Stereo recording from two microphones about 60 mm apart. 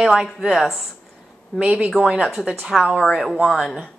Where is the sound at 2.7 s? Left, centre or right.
Centre.